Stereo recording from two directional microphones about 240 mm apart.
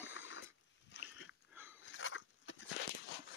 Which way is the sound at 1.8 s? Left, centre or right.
Left.